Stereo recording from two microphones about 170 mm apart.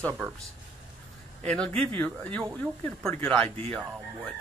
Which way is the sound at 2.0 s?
10° left (ahead or behind).